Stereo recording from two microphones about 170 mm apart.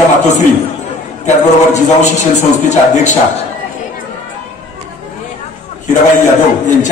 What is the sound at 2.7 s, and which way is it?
Speech, 45° left (ahead or behind).